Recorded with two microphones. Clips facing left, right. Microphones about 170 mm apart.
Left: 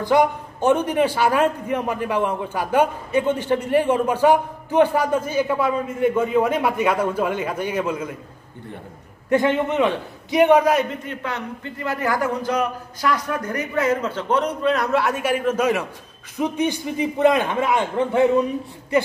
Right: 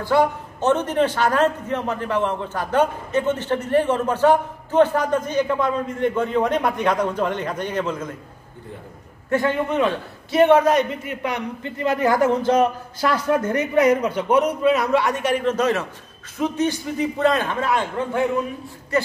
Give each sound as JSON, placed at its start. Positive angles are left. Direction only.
{"t": 0.0, "sound": "a man's voice", "side_deg": 15}
{"t": 9.3, "sound": "a man's voice", "side_deg": 20}
{"t": 11.1, "sound": "a man's voice", "side_deg": -15}